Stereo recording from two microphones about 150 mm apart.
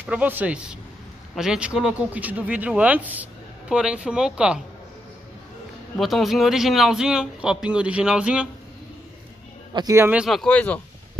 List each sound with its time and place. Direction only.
0.0 s speech: 10° right (ahead or behind)
5.9 s speech: centre (ahead or behind)
9.8 s a man's voice: 25° right (ahead or behind)
10.0 s speech: 5° right (ahead or behind)